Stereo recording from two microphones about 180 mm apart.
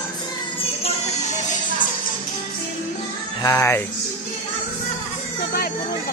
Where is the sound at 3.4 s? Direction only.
15° left (ahead or behind).